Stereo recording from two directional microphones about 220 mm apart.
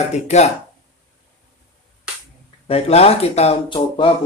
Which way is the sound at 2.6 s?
25° left (ahead or behind).